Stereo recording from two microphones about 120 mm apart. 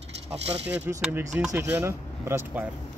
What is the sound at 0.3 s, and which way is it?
Speech, 60° right (ahead or behind).